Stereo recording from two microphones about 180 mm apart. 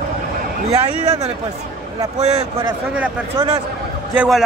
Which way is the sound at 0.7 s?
35° right (ahead or behind).